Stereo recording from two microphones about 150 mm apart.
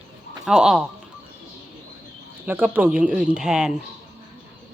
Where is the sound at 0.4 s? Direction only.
5° right (ahead or behind).